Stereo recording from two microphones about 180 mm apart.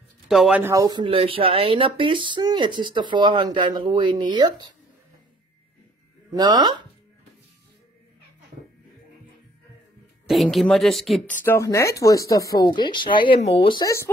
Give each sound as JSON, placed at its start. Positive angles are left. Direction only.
{"t": 0.3, "sound": "speech", "side_deg": -5}
{"t": 6.3, "sound": "speech", "side_deg": -25}
{"t": 10.2, "sound": "a woman's voice", "side_deg": 0}
{"t": 11.4, "sound": "speech", "side_deg": 15}